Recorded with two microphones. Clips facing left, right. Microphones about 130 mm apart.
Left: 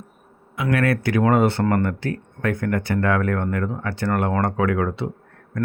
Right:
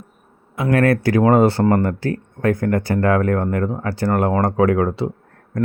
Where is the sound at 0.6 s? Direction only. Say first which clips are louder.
Right 5 dB; 40° right (ahead or behind).